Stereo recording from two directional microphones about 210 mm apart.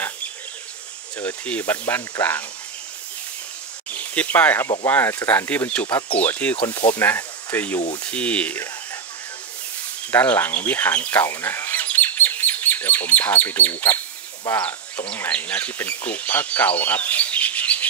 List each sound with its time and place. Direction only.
1.1 s speech: 5° left (ahead or behind)
3.9 s speech: 5° left (ahead or behind)
5.9 s speech: 20° left (ahead or behind)
6.1 s speech: 5° left (ahead or behind)
10.1 s speech: 10° left (ahead or behind)